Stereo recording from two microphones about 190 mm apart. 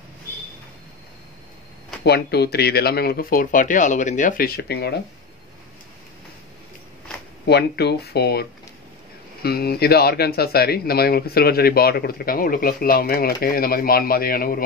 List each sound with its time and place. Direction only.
2.0 s speech: 60° left (ahead or behind)
7.4 s a man's voice: 60° left (ahead or behind)